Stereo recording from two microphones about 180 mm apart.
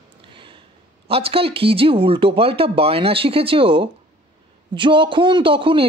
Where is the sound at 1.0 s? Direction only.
30° right (ahead or behind).